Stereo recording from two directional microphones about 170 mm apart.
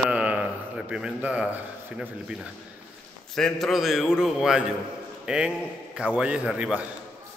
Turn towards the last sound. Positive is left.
turn(degrees=-5)  # may be behind; listen again after turning